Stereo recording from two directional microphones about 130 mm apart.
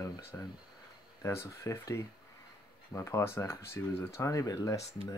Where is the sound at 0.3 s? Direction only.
15° left (ahead or behind).